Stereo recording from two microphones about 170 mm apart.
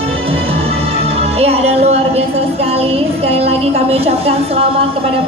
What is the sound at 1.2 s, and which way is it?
Music, 35° right (ahead or behind).